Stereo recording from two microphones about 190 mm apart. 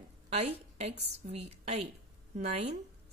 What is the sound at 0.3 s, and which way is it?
A woman's voice, 35° right (ahead or behind).